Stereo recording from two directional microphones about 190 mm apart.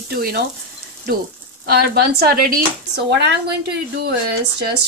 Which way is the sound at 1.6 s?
55° right (ahead or behind).